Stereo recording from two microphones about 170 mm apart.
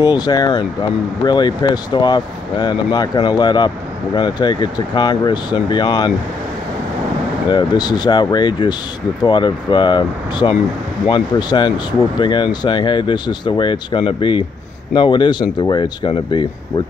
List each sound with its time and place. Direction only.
0.0 s speech: 25° left (ahead or behind)
7.4 s speech: 25° left (ahead or behind)